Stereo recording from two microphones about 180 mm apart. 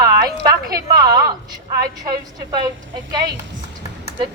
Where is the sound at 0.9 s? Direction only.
20° right (ahead or behind).